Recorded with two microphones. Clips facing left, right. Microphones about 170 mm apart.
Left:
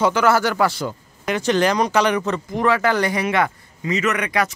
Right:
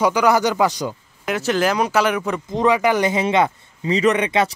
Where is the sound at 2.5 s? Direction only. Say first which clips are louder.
Right 2 dB; 15° right (ahead or behind).